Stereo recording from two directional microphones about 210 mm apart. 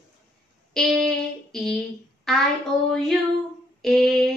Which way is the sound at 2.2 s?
Centre (ahead or behind).